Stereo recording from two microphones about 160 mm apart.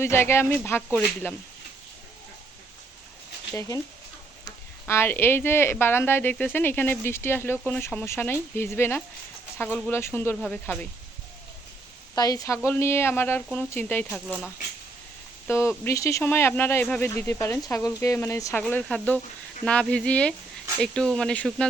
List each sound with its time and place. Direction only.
0.0 s speech: 15° left (ahead or behind)
3.5 s speech: 20° left (ahead or behind)
12.1 s speech: 25° left (ahead or behind)
15.4 s speech: 15° left (ahead or behind)
18.6 s speech: 5° left (ahead or behind)